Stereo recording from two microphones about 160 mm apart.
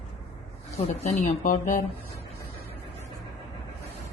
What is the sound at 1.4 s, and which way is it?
Speech, 55° left (ahead or behind).